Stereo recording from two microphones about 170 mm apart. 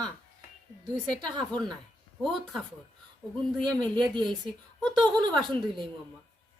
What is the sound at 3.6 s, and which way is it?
Speech, 5° left (ahead or behind).